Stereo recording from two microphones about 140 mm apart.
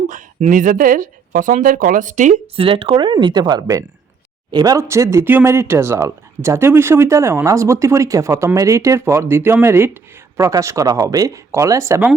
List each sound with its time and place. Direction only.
0.1 s speech: 65° right (ahead or behind)
2.6 s speech: 40° right (ahead or behind); by 12.1 s 20° right (ahead or behind)